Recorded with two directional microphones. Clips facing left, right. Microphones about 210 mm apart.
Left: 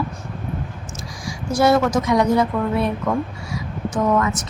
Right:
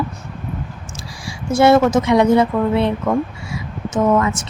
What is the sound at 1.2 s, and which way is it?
Speech, 25° right (ahead or behind).